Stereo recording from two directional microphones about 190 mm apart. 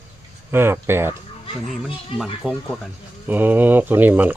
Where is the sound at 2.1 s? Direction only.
25° left (ahead or behind).